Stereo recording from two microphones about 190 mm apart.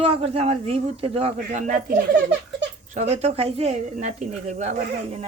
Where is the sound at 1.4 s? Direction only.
45° right (ahead or behind).